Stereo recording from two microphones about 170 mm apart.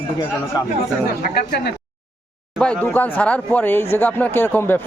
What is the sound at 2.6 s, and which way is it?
Speech, 5° left (ahead or behind).